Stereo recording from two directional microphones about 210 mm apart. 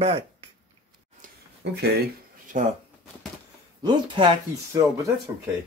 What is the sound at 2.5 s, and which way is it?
Speech, 40° right (ahead or behind).